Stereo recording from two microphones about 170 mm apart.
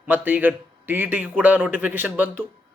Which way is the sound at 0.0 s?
10° right (ahead or behind).